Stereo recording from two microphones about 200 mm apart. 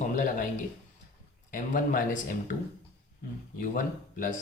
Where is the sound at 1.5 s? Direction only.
40° left (ahead or behind).